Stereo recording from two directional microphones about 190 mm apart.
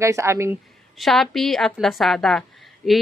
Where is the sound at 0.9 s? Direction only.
Centre (ahead or behind).